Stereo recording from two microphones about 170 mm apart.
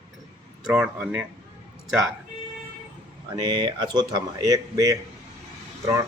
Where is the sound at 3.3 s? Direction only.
25° right (ahead or behind).